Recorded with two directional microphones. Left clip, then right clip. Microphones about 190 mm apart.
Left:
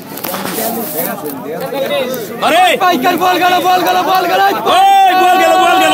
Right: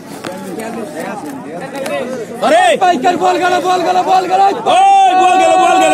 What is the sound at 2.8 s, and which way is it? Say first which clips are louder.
A man's voice: even; 15° left (ahead or behind).